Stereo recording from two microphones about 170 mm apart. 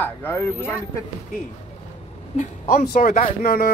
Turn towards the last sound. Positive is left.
turn(degrees=60)  # may be behind; listen again after turning